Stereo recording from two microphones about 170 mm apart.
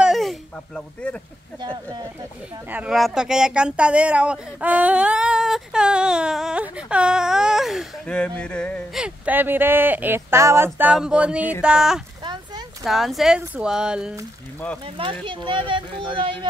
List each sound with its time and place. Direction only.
0.0 s a sound: centre (ahead or behind)
2.7 s speech: 5° right (ahead or behind)
9.0 s speech: 10° right (ahead or behind)
12.2 s a sound: 25° right (ahead or behind)
12.8 s speech: centre (ahead or behind)
15.2 s speech: 30° right (ahead or behind)